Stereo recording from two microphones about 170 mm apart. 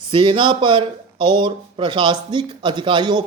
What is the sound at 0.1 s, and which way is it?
Speech, 30° right (ahead or behind).